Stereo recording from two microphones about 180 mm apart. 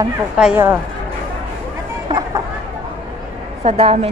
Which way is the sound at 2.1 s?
25° right (ahead or behind).